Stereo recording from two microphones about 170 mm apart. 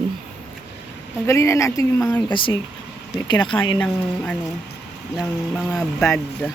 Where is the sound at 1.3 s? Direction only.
15° left (ahead or behind).